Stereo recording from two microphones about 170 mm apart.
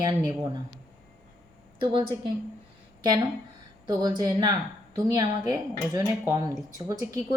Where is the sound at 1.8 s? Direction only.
30° right (ahead or behind).